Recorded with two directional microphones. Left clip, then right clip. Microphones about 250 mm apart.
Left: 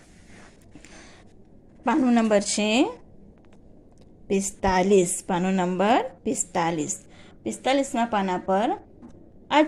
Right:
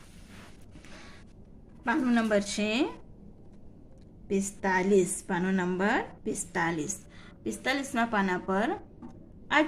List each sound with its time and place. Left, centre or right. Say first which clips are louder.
1.8 s a woman's voice: left 6 dB; centre
4.3 s a woman's voice: left 5 dB; left